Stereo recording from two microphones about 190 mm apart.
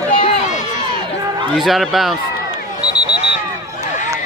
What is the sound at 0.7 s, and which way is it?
Crowd, 20° right (ahead or behind).